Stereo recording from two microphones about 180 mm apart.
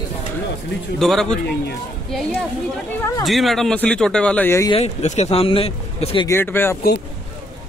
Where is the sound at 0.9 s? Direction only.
Centre (ahead or behind).